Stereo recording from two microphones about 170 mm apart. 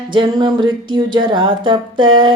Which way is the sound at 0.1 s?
25° right (ahead or behind).